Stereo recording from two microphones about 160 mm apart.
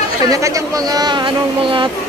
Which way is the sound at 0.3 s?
20° right (ahead or behind).